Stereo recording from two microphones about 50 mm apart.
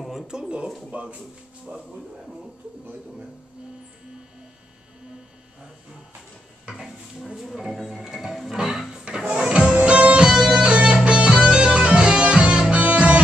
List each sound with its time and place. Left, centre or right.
0.3 s speech: centre
0.7 s speech: centre
7.3 s speech: centre
9.0 s music: centre
10.2 s music: centre